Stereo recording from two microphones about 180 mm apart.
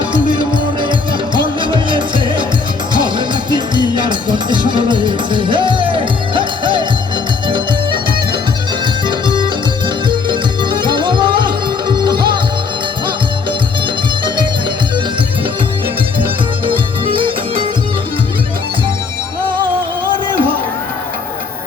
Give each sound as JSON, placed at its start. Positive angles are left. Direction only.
{"t": 0.1, "sound": "music", "side_deg": -25}
{"t": 16.6, "sound": "music", "side_deg": -30}